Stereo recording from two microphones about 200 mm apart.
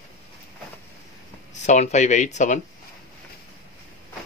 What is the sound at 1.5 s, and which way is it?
Speech, 35° left (ahead or behind).